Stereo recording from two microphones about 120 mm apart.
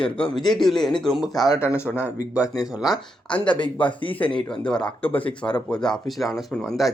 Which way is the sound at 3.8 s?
45° left (ahead or behind).